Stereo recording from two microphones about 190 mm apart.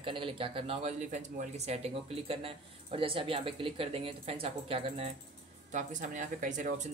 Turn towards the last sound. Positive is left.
turn(degrees=-40)  # may be behind; listen again after turning